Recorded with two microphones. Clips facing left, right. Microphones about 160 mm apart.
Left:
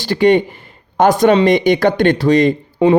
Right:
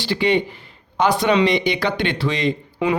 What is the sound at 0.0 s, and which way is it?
Speech, 45° left (ahead or behind).